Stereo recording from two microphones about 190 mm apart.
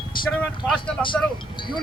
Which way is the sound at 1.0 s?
25° left (ahead or behind).